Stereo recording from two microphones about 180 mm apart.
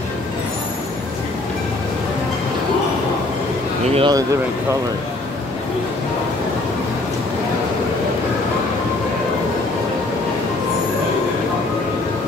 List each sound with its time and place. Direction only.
3.9 s speech: 30° right (ahead or behind)